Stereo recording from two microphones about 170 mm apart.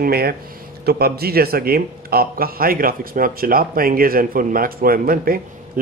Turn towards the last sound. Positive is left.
turn(degrees=-60)  # may be behind; listen again after turning